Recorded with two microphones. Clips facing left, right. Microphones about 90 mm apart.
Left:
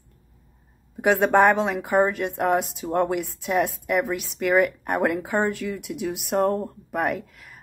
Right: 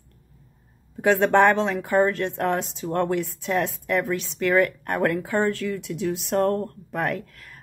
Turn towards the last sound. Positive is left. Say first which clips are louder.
# left 1 dB
turn(degrees=10)  # may be behind; listen again after turning